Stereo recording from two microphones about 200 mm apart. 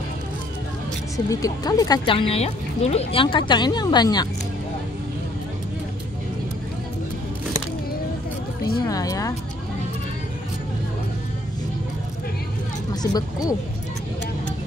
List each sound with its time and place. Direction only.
1.1 s speech: 15° left (ahead or behind)
8.8 s speech: 15° left (ahead or behind)
12.9 s speech: 20° left (ahead or behind)